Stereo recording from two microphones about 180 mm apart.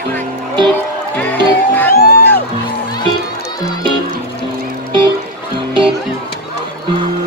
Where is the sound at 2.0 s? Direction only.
60° left (ahead or behind).